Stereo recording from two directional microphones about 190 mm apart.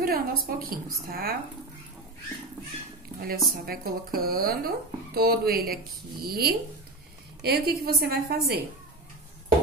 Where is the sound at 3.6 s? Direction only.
50° right (ahead or behind).